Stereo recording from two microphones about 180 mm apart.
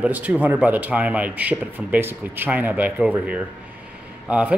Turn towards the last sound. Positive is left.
turn(degrees=-5)  # may be behind; listen again after turning